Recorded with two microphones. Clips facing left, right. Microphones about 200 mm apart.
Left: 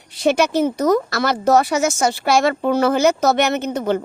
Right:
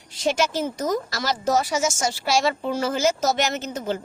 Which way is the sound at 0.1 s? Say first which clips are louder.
Left 6 dB; 60° left (ahead or behind).